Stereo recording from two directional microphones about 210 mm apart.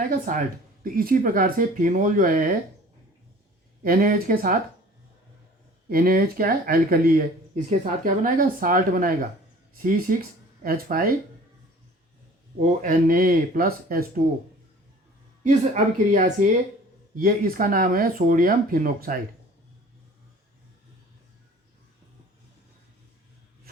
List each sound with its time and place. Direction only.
0.3 s speech: 40° right (ahead or behind)
3.8 s speech: 45° right (ahead or behind)
5.9 s speech: 45° right (ahead or behind)
12.5 s speech: 35° right (ahead or behind)
15.4 s speech: 35° right (ahead or behind)